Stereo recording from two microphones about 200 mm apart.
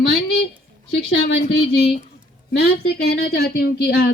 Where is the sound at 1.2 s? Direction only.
65° left (ahead or behind).